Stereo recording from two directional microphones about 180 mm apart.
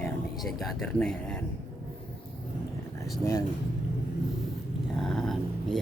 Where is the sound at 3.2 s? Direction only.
15° left (ahead or behind).